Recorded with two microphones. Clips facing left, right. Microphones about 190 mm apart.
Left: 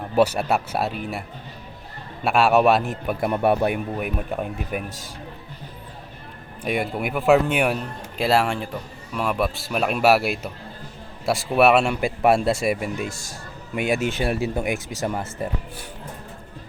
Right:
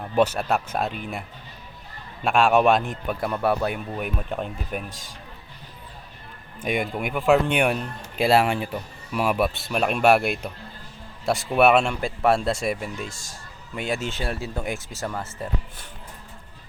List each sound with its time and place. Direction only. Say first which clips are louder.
0.2 s a man's voice: left 2 dB; 10° left (ahead or behind)
2.2 s speech: left 1 dB; 5° left (ahead or behind)
3.2 s a man's voice: left 4 dB; 20° left (ahead or behind)
3.9 s a man's voice: left 2 dB; 5° left (ahead or behind)
6.6 s a man's voice: left 1 dB; centre (ahead or behind)